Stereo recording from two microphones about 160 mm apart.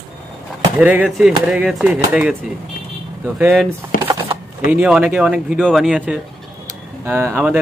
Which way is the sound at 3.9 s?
60° left (ahead or behind).